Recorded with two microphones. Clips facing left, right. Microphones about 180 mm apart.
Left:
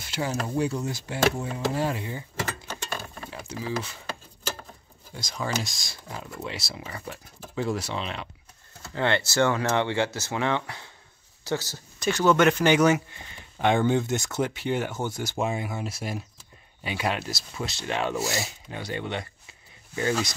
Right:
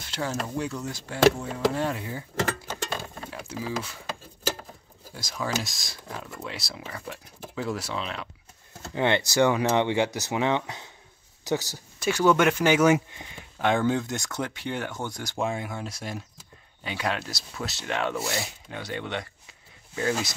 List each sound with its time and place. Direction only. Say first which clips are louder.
0.0 s speech: left 1 dB; 10° left (ahead or behind)
0.7 s speech: left 3 dB; 25° left (ahead or behind)
1.4 s speech: right 1 dB; 5° left (ahead or behind)
3.3 s speech: left 1 dB; 5° right (ahead or behind)
5.1 s speech: even; 5° right (ahead or behind)
8.8 s speech: right 1 dB; 15° right (ahead or behind)
13.6 s speech: left 2 dB; centre (ahead or behind)